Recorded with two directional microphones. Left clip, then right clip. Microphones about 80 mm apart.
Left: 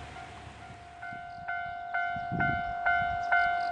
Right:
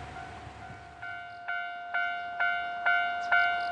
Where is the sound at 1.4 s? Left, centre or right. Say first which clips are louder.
Even; right.